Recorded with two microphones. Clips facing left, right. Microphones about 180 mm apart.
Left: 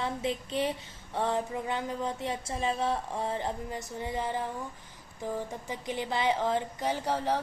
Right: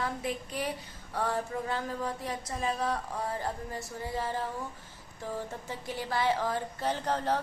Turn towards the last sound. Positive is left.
turn(degrees=10)  # may be behind; listen again after turning